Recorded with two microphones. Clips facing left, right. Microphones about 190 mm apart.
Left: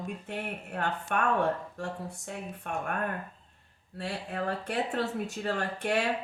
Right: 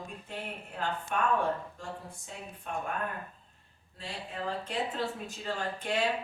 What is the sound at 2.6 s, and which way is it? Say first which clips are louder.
Speech: left 1 dB; 60° left (ahead or behind).